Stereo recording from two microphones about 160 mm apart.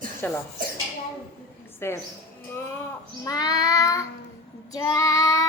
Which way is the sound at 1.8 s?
15° left (ahead or behind).